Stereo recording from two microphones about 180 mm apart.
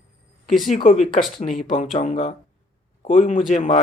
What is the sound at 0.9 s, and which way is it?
A man's voice, 40° left (ahead or behind).